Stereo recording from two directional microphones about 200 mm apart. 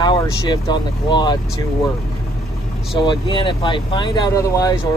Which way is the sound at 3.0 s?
25° left (ahead or behind).